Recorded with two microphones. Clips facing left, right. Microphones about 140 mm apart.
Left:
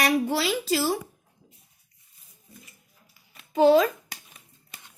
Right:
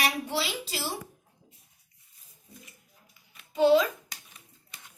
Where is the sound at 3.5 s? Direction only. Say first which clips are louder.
Left 3 dB; 50° left (ahead or behind).